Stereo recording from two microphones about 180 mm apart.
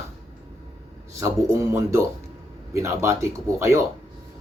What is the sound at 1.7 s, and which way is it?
Speech, 15° right (ahead or behind).